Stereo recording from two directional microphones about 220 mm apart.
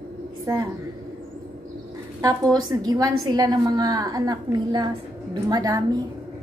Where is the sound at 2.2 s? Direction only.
15° right (ahead or behind).